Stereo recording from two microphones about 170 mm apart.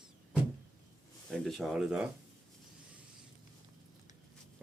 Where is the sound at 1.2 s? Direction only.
5° left (ahead or behind).